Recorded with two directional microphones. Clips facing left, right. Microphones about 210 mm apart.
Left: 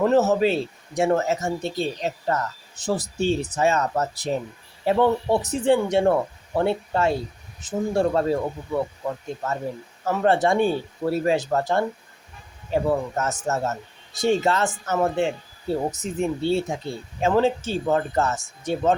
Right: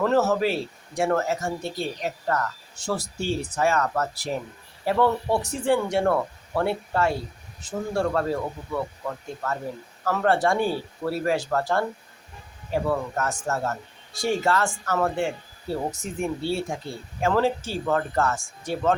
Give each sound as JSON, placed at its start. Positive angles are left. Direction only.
{"t": 0.0, "sound": "speech", "side_deg": 20}